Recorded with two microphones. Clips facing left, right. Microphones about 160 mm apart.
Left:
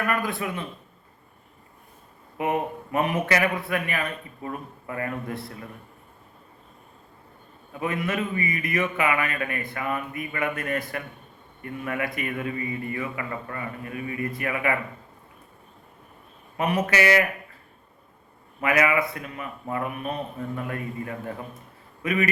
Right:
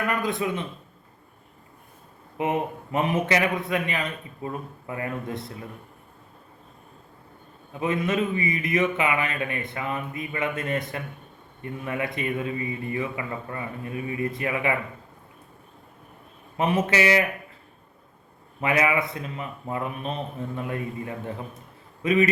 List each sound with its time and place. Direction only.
0.0 s a man's voice: 20° right (ahead or behind)
2.4 s a man's voice: 20° right (ahead or behind)
7.7 s a man's voice: 20° right (ahead or behind)
16.6 s a man's voice: 25° right (ahead or behind)
18.6 s a man's voice: 25° right (ahead or behind)